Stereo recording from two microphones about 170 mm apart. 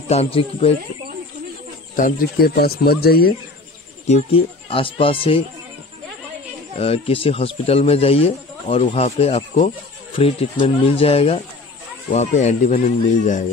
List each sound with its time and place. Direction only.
0.1 s speech: 35° left (ahead or behind)
2.0 s speech: 55° left (ahead or behind)
4.1 s speech: 35° left (ahead or behind)
6.8 s speech: 35° left (ahead or behind)